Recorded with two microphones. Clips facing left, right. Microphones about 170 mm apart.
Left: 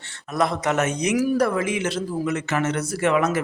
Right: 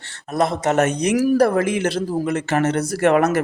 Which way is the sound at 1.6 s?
60° right (ahead or behind).